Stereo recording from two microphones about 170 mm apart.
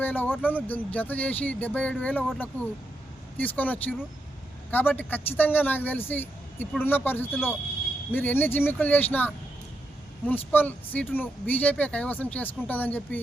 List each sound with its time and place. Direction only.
0.0 s speech: 10° left (ahead or behind)